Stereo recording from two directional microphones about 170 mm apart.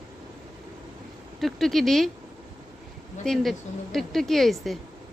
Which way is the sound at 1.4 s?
Centre (ahead or behind).